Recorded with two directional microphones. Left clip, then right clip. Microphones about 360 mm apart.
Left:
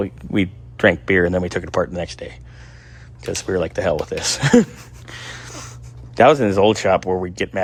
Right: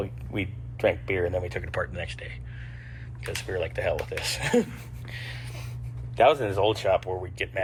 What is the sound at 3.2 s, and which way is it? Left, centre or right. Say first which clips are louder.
Speech: left 9 dB; left.